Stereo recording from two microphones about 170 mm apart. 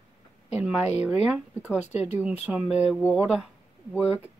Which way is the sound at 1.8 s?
40° left (ahead or behind).